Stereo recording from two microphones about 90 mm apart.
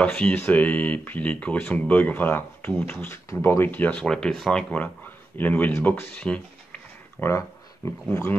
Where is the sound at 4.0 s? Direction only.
5° left (ahead or behind).